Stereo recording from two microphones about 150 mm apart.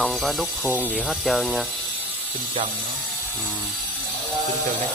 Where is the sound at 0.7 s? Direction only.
10° right (ahead or behind).